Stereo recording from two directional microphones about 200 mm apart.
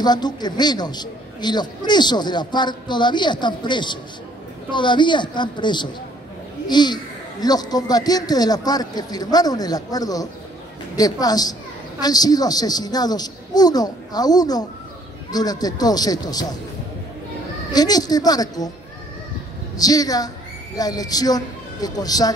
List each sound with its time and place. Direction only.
0.0 s a man's voice: 20° left (ahead or behind)
17.7 s a man's voice: 20° left (ahead or behind)
19.8 s a man's voice: 20° left (ahead or behind)